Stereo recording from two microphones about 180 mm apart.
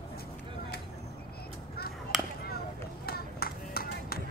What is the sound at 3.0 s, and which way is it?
Run, 60° left (ahead or behind).